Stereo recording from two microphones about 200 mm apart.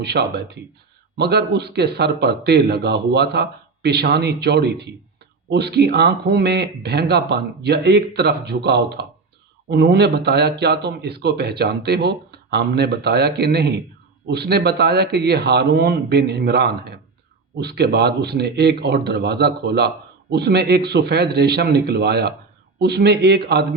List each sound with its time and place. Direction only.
0.0 s a man's voice: 55° right (ahead or behind)